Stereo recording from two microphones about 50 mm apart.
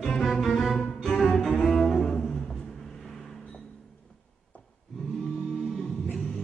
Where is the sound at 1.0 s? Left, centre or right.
Centre.